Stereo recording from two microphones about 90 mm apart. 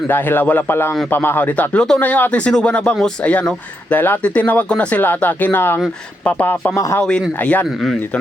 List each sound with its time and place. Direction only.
0.1 s a man's voice: 20° left (ahead or behind)
6.7 s speech: 35° left (ahead or behind)
7.0 s speech: 5° left (ahead or behind)
7.3 s a man's voice: 20° left (ahead or behind)